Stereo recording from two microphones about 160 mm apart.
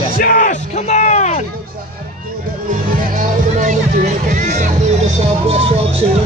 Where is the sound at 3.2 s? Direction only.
50° right (ahead or behind).